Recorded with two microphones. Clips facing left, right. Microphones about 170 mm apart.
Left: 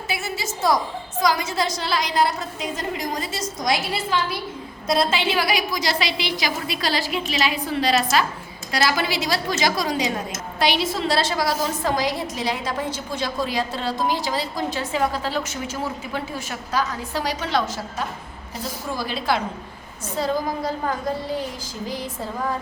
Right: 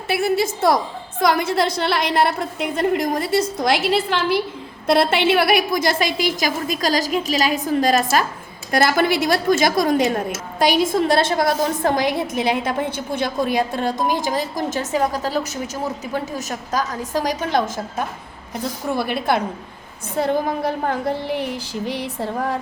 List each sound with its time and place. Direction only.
0.1 s a woman's voice: 60° right (ahead or behind)
18.5 s a woman's voice: 60° right (ahead or behind)